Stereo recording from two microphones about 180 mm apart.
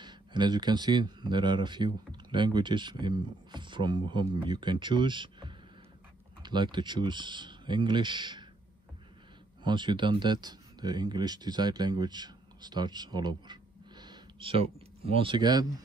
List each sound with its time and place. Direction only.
0.0 s speech: 25° right (ahead or behind)
9.6 s speech: 25° right (ahead or behind)